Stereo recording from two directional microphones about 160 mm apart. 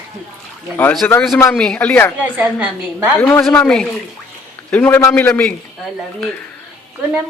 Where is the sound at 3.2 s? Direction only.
15° left (ahead or behind).